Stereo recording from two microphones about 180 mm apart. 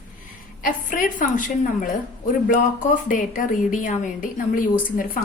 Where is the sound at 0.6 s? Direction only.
50° left (ahead or behind).